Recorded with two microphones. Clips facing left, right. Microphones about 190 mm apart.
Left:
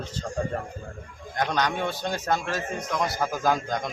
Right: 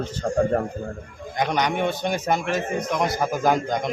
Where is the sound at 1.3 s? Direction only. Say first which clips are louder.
Right 3 dB; 15° right (ahead or behind).